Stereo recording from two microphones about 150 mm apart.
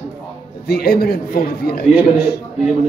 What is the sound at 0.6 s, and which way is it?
A man's voice, 90° left.